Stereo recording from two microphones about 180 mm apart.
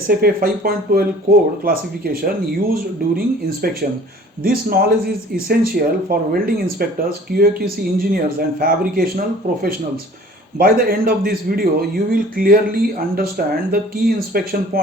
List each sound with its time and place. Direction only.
0.1 s a man's voice: 55° right (ahead or behind)